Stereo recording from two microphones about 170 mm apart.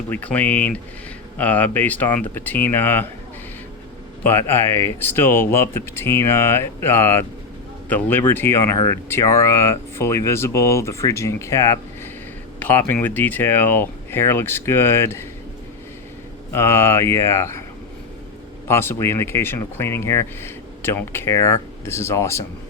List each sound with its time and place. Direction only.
0.1 s speech: 10° left (ahead or behind)
4.2 s speech: 10° left (ahead or behind)
16.5 s speech: 15° left (ahead or behind)
18.7 s speech: 15° left (ahead or behind)